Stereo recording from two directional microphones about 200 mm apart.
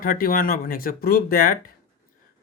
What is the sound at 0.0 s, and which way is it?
Speech, 45° left (ahead or behind).